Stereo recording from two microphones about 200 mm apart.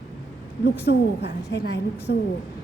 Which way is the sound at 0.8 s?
60° left (ahead or behind).